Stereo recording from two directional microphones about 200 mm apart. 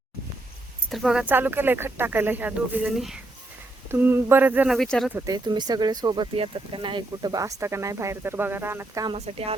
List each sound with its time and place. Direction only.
0.9 s speech: centre (ahead or behind)
5.1 s speech: 20° right (ahead or behind)
9.0 s speech: 30° right (ahead or behind)